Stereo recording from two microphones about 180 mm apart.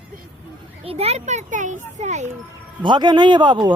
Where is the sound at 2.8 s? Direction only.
25° right (ahead or behind).